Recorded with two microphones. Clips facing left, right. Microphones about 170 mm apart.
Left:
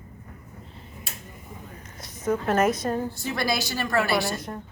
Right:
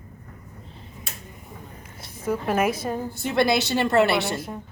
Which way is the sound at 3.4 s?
25° right (ahead or behind).